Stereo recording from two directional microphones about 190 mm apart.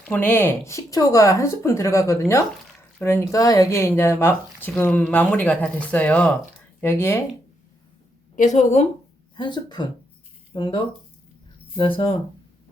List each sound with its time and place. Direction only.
0.1 s speech: 10° left (ahead or behind)
8.4 s a woman's voice: 40° left (ahead or behind)
9.3 s speech: 25° left (ahead or behind)
11.9 s a woman's voice: 30° left (ahead or behind)